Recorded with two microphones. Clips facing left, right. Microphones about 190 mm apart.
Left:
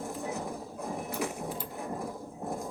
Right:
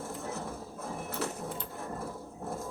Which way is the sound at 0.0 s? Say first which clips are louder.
Left 2 dB; 15° left (ahead or behind).